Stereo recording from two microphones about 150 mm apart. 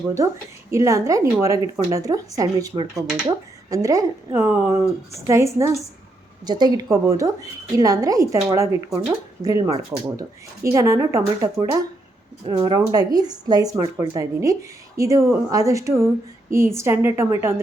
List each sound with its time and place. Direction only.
0.7 s speech: 20° right (ahead or behind)
12.5 s a woman's voice: 30° right (ahead or behind)